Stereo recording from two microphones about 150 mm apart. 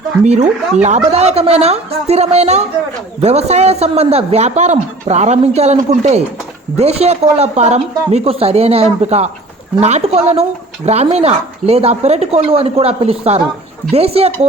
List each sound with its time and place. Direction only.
0.3 s a man's voice: 50° right (ahead or behind)